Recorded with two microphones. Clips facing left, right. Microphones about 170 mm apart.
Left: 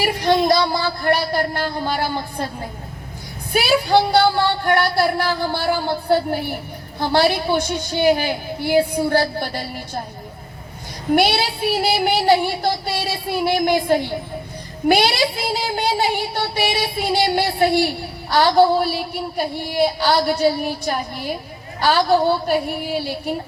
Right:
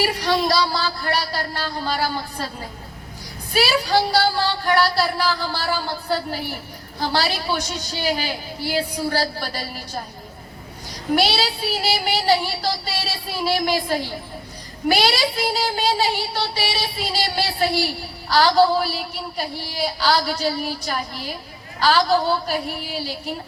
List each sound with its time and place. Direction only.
0.1 s a man's voice: 55° left (ahead or behind)
2.0 s a woman's voice: 20° left (ahead or behind)
3.5 s speech: 55° left (ahead or behind)
11.3 s speech: 55° left (ahead or behind)
18.5 s a woman's voice: 25° left (ahead or behind)
18.8 s a man's voice: 55° left (ahead or behind)